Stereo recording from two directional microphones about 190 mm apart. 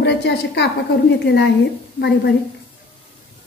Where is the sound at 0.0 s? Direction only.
65° left (ahead or behind).